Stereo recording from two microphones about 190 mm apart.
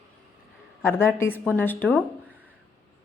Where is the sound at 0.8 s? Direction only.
10° left (ahead or behind).